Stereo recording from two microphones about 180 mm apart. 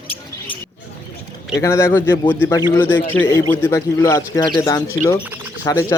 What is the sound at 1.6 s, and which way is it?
Speech, 15° left (ahead or behind).